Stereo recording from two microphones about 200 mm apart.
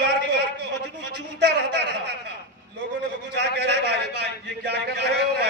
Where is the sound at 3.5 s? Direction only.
60° right (ahead or behind).